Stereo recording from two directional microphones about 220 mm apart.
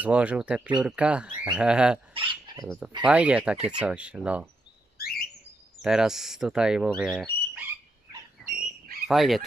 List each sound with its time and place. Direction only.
0.0 s speech: 5° right (ahead or behind)
2.1 s speech: 20° right (ahead or behind)
3.0 s speech: 5° right (ahead or behind)
5.8 s speech: 5° right (ahead or behind)
8.4 s dog: centre (ahead or behind)
9.0 s frog: centre (ahead or behind)